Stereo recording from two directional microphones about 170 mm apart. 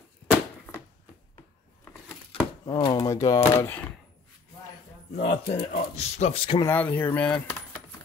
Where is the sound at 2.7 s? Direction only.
25° left (ahead or behind).